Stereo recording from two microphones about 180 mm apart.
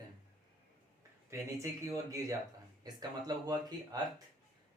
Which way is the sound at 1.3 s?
15° right (ahead or behind).